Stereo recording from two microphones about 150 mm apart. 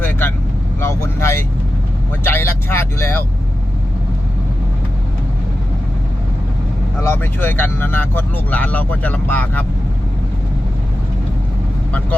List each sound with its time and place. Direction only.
0.0 s speech: 15° left (ahead or behind)
7.1 s speech: 15° left (ahead or behind)